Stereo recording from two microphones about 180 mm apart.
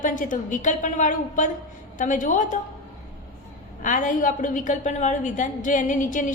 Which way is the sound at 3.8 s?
45° left (ahead or behind).